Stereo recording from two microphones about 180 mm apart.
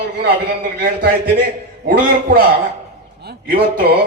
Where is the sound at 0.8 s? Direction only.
60° right (ahead or behind).